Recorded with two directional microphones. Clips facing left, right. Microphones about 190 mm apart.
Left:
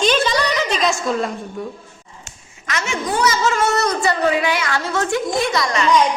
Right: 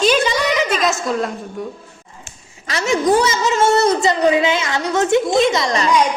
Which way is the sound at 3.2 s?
20° right (ahead or behind).